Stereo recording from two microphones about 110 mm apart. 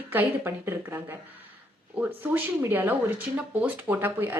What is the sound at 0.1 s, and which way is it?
A woman's voice, 20° right (ahead or behind).